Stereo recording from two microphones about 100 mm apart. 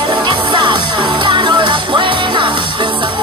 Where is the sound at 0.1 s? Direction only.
50° right (ahead or behind).